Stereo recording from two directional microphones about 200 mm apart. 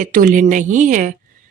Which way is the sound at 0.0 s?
40° right (ahead or behind).